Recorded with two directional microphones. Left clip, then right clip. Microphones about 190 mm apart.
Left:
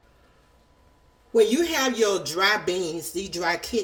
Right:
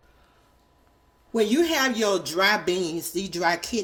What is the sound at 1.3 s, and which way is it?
Speech, 40° right (ahead or behind).